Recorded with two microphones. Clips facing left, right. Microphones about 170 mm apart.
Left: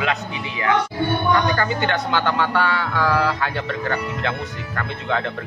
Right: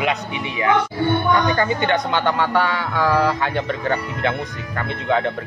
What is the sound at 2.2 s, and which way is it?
A man's voice, 10° right (ahead or behind).